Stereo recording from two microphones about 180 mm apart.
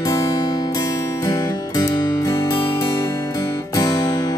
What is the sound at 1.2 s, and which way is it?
Music, 15° left (ahead or behind).